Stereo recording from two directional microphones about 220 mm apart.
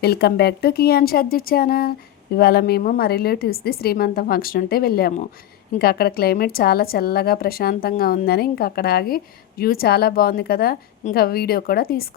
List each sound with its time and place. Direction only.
0.0 s a woman's voice: 45° left (ahead or behind)